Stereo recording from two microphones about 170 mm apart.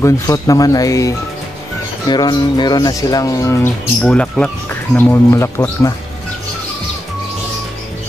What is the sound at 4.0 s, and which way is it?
Speech, 5° left (ahead or behind).